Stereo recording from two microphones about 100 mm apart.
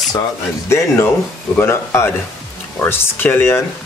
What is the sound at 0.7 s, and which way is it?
Speech, 25° left (ahead or behind).